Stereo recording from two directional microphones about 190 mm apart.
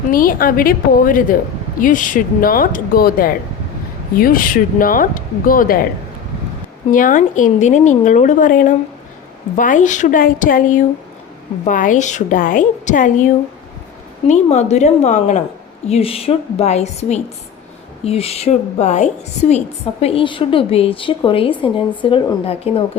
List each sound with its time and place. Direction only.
0.1 s a woman's voice: 50° left (ahead or behind)
6.9 s a woman's voice: 45° left (ahead or behind)
14.3 s a woman's voice: 35° left (ahead or behind)